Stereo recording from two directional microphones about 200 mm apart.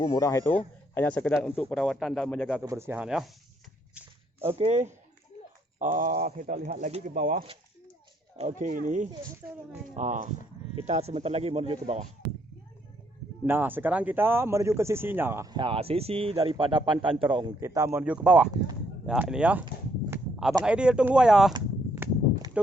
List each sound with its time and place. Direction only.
0.0 s speech: 20° left (ahead or behind)
2.6 s speech: 10° right (ahead or behind)
4.4 s speech: 30° right (ahead or behind)
9.4 s speech: 10° right (ahead or behind)
9.9 s speech: 35° right (ahead or behind)
13.4 s speech: 10° right (ahead or behind)
20.7 s speech: 5° right (ahead or behind)
21.5 s a sound: 15° right (ahead or behind)